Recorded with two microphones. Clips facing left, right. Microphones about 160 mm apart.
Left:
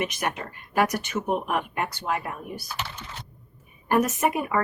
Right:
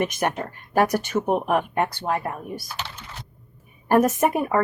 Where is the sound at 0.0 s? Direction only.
45° right (ahead or behind).